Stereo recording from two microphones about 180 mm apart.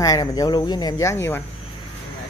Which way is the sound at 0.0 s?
20° left (ahead or behind).